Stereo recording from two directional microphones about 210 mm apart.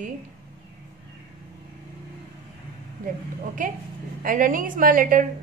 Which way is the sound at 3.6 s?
40° right (ahead or behind).